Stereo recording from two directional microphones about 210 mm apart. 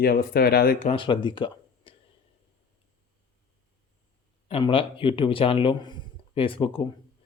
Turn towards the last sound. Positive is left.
turn(degrees=25)  # may be behind; listen again after turning